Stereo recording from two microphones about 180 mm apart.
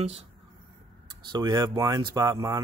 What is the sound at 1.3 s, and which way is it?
Speech, 25° right (ahead or behind).